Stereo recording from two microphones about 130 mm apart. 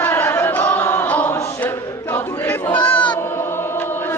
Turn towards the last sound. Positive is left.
turn(degrees=15)  # may be behind; listen again after turning